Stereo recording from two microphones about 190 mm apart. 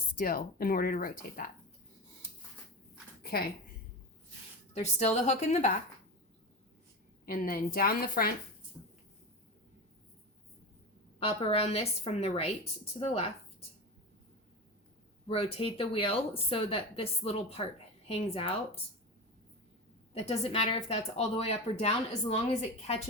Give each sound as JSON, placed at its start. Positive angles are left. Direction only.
{"t": 0.2, "sound": "speech", "side_deg": 50}
{"t": 3.2, "sound": "a woman's voice", "side_deg": 55}
{"t": 4.7, "sound": "speech", "side_deg": 35}
{"t": 7.3, "sound": "speech", "side_deg": 50}
{"t": 8.8, "sound": "a sound", "side_deg": -10}
{"t": 11.2, "sound": "speech", "side_deg": 30}
{"t": 15.3, "sound": "speech", "side_deg": 30}
{"t": 20.1, "sound": "speech", "side_deg": 30}